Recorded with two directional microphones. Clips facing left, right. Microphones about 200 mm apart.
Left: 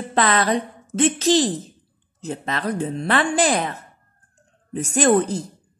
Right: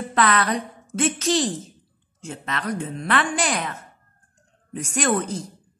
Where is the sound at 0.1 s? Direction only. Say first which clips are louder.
Left 2 dB; 30° left (ahead or behind).